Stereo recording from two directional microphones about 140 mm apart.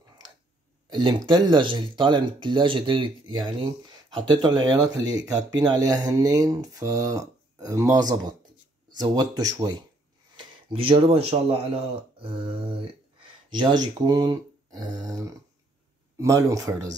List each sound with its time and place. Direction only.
0.8 s speech: 30° right (ahead or behind)
10.3 s speech: 40° right (ahead or behind)
13.5 s speech: 30° right (ahead or behind)